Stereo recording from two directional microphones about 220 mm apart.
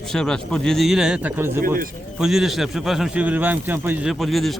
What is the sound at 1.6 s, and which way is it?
Speech, 40° right (ahead or behind).